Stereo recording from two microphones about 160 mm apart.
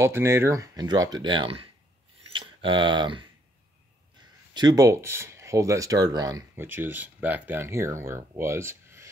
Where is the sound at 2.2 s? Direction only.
30° right (ahead or behind).